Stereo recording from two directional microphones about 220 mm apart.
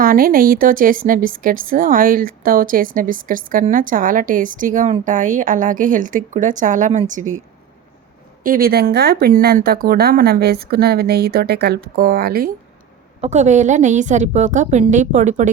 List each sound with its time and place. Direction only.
0.0 s a woman's voice: 40° right (ahead or behind)
8.4 s speech: 40° right (ahead or behind)
13.2 s a woman's voice: 30° right (ahead or behind)